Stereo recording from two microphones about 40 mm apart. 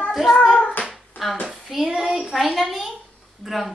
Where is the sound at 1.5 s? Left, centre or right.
Centre.